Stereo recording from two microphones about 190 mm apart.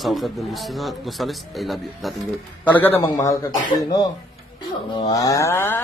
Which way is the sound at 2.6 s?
10° left (ahead or behind).